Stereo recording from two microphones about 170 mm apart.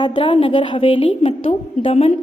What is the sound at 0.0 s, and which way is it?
A woman's voice, 30° left (ahead or behind).